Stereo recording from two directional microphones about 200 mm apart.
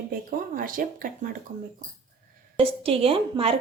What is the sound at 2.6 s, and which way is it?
A woman's voice, 30° right (ahead or behind).